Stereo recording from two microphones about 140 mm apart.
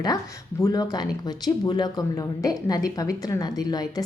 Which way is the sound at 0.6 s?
25° left (ahead or behind).